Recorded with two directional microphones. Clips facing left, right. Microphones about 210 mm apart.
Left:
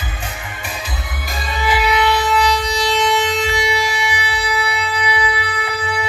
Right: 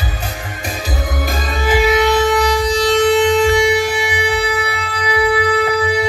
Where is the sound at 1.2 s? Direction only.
45° right (ahead or behind).